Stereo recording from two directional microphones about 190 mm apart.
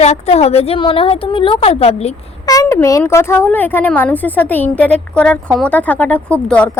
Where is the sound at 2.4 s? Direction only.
15° left (ahead or behind).